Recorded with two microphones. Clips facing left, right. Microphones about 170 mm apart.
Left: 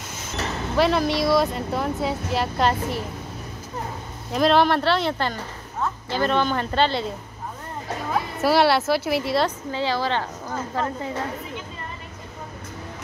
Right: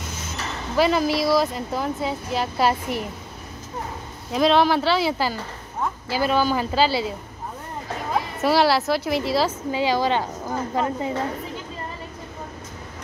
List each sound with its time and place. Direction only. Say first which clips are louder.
0.7 s speech: right 1 dB; centre (ahead or behind)
4.3 s speech: even; centre (ahead or behind)
8.4 s speech: left 1 dB; centre (ahead or behind)
9.7 s a woman's voice: right 3 dB; 10° right (ahead or behind)